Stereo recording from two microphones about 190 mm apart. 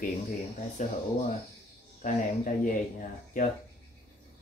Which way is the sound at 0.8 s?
40° left (ahead or behind).